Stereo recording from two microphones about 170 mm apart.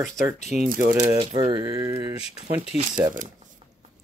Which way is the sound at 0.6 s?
55° right (ahead or behind).